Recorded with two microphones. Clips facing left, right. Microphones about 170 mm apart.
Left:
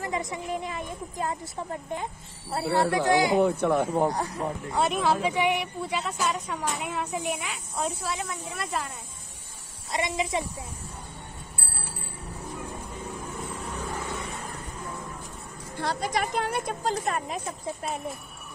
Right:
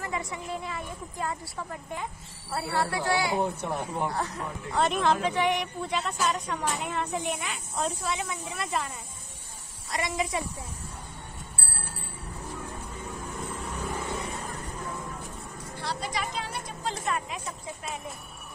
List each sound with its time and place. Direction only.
0.0 s a woman's voice: 20° left (ahead or behind)
3.3 s speech: 75° left (ahead or behind)
4.1 s speech: 10° left (ahead or behind)
9.8 s speech: 25° left (ahead or behind)
15.8 s speech: 50° left (ahead or behind)